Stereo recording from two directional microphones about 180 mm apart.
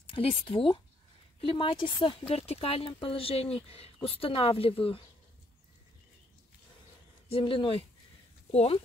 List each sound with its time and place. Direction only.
0.1 s speech: 30° left (ahead or behind)
7.2 s speech: 30° left (ahead or behind)